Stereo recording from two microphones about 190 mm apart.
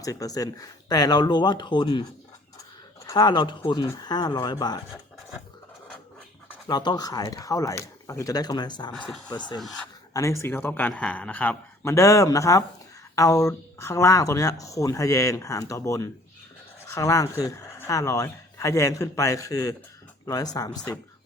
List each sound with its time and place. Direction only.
0.0 s speech: 20° left (ahead or behind)
2.6 s a sound: 15° left (ahead or behind)
3.7 s speech: 20° left (ahead or behind)
6.7 s speech: 20° left (ahead or behind)
9.6 s speech: centre (ahead or behind)
10.1 s speech: 15° left (ahead or behind)
20.7 s speech: 10° left (ahead or behind)